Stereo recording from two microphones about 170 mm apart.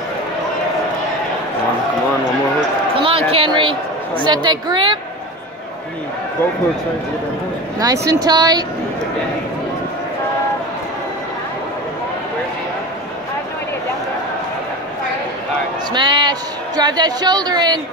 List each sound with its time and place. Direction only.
2.9 s a man's voice: 30° right (ahead or behind)
7.8 s a woman's voice: 20° right (ahead or behind)
15.9 s a woman's voice: 25° right (ahead or behind)